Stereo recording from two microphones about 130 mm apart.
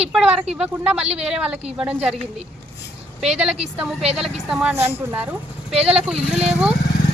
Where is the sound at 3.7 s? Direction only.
5° right (ahead or behind).